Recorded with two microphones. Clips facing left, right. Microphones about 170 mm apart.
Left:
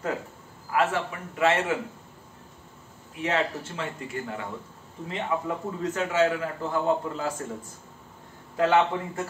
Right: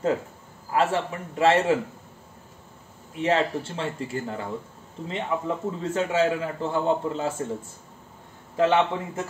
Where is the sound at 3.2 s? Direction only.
30° right (ahead or behind).